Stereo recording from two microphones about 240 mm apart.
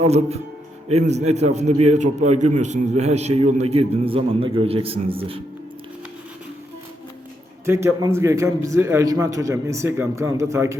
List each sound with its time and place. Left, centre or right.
0.0 s a man's voice: right
7.6 s a man's voice: centre